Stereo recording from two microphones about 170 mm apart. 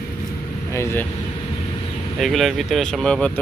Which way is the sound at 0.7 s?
15° left (ahead or behind).